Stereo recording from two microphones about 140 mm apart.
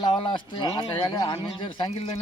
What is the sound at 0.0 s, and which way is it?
Speech, 35° left (ahead or behind).